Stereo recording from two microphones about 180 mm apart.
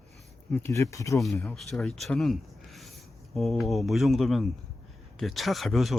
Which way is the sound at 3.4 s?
Centre (ahead or behind).